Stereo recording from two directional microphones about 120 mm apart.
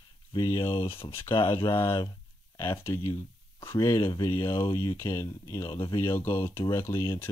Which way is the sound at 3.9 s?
35° left (ahead or behind).